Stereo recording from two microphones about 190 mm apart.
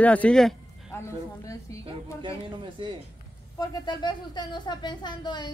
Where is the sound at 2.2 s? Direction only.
25° right (ahead or behind).